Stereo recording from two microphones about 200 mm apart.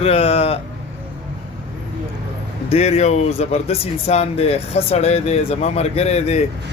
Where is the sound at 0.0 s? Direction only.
30° left (ahead or behind).